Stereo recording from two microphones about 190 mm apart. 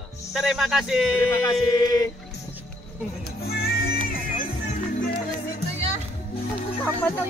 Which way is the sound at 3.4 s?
55° left (ahead or behind).